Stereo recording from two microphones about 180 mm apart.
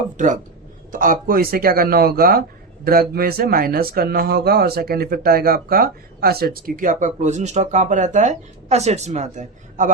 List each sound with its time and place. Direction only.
0.9 s speech: 50° right (ahead or behind)